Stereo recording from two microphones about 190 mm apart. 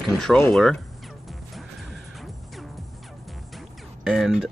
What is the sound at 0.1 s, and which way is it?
Speech, 5° left (ahead or behind).